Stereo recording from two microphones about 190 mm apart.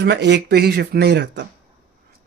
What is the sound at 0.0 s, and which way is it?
Speech, 60° right (ahead or behind).